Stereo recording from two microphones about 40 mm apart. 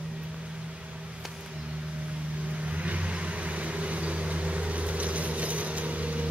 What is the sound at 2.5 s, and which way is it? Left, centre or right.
Vehicle, right.